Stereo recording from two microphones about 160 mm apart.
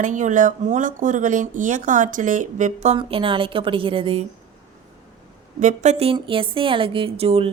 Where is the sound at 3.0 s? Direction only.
35° right (ahead or behind).